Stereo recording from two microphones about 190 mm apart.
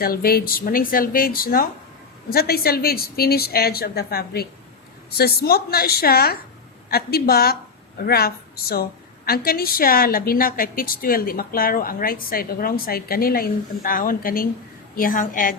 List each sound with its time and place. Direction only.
0.0 s a woman's voice: 50° left (ahead or behind)